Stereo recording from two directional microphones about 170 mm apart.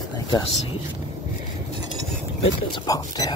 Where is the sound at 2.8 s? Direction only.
20° left (ahead or behind).